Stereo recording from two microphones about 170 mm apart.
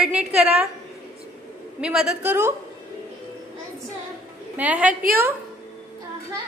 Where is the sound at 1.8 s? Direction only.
5° right (ahead or behind).